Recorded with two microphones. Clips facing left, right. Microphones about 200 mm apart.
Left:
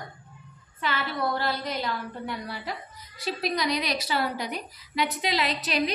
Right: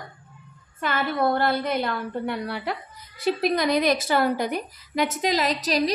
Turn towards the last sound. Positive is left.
turn(degrees=-40)  # may be behind; listen again after turning